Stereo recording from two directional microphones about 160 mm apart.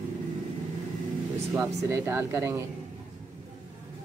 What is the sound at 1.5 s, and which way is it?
Speech, 15° right (ahead or behind).